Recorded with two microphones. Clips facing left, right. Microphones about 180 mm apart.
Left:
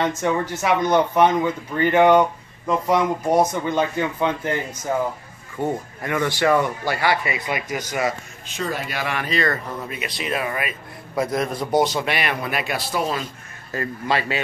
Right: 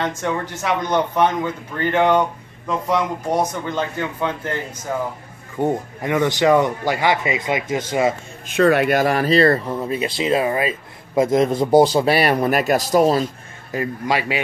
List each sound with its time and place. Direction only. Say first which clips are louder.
0.0 s speech: left 2 dB; 10° left (ahead or behind)
5.6 s speech: right 4 dB; 20° right (ahead or behind)
8.5 s speech: right 12 dB; 65° right (ahead or behind)
8.9 s speech: right 9 dB; 40° right (ahead or behind)
13.7 s a man's voice: right 2 dB; 15° right (ahead or behind)